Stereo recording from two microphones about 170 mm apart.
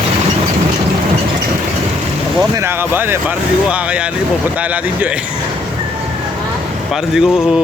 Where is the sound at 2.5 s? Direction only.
15° right (ahead or behind).